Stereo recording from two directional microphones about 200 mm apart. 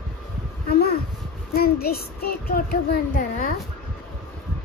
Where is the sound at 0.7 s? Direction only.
50° left (ahead or behind).